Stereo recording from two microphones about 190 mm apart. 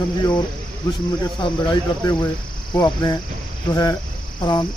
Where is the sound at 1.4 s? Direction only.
25° left (ahead or behind).